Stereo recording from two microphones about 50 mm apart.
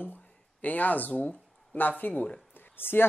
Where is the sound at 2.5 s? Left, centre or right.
Left.